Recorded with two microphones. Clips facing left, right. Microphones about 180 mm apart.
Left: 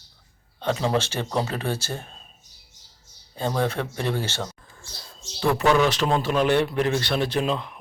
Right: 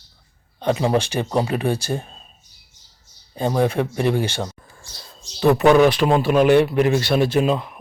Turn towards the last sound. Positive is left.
turn(degrees=-10)  # may be behind; listen again after turning